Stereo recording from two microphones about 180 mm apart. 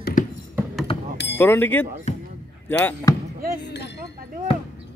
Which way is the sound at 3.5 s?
70° left (ahead or behind).